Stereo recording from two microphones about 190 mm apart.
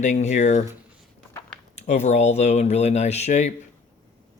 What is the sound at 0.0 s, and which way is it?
Speech, 40° left (ahead or behind).